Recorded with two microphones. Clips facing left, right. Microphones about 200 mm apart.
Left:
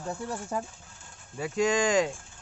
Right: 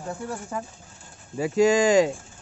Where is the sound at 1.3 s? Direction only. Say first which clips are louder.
Right 7 dB; 5° right (ahead or behind).